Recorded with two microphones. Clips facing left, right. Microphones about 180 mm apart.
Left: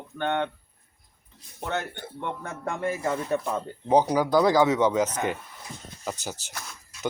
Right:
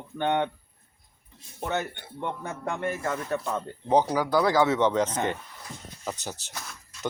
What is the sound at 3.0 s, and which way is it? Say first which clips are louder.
A man's voice: left 3 dB; 15° left (ahead or behind).